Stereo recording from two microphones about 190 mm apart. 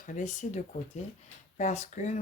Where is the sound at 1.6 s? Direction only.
40° left (ahead or behind).